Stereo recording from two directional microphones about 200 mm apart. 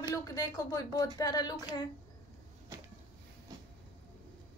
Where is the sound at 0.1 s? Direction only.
20° left (ahead or behind).